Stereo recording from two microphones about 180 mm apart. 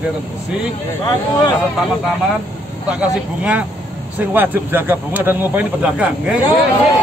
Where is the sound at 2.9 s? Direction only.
5° right (ahead or behind).